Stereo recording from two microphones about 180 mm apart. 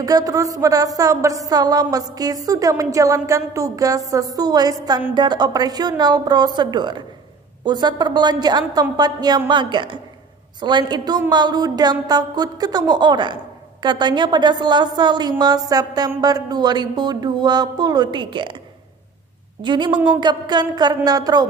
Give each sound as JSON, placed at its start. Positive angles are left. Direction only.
{"t": 0.0, "sound": "a woman's voice", "side_deg": -20}
{"t": 19.6, "sound": "a woman's voice", "side_deg": -25}